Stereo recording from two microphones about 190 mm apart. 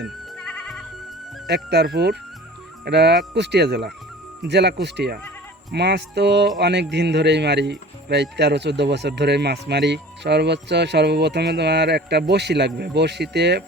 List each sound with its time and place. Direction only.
0.3 s music: 5° left (ahead or behind)
1.5 s a man's voice: 60° right (ahead or behind)